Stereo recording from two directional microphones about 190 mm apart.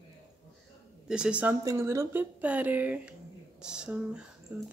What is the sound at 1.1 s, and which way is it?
Speech, 5° right (ahead or behind).